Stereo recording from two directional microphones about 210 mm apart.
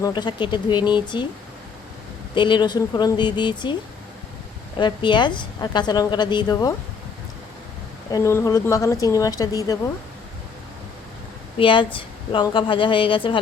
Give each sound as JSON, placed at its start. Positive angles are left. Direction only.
{"t": 0.0, "sound": "a woman's voice", "side_deg": 20}
{"t": 2.3, "sound": "a woman's voice", "side_deg": 20}
{"t": 4.8, "sound": "a woman's voice", "side_deg": 20}
{"t": 8.1, "sound": "speech", "side_deg": 15}
{"t": 11.5, "sound": "a woman's voice", "side_deg": 25}